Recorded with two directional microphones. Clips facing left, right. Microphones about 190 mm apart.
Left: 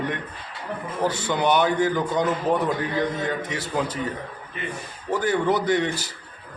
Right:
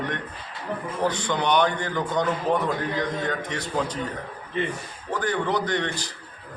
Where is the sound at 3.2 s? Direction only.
5° left (ahead or behind).